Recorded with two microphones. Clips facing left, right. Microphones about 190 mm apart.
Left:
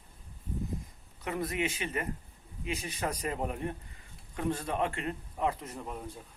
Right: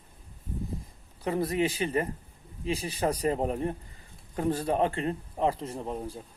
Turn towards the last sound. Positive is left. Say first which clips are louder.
# right 6 dB
turn(degrees=-30)  # may be behind; listen again after turning